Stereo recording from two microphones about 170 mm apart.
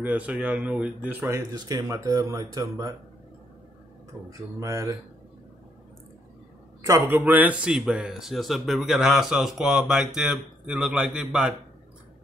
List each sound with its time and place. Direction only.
0.0 s speech: 10° right (ahead or behind)
4.3 s speech: 20° right (ahead or behind)
6.9 s speech: 15° right (ahead or behind)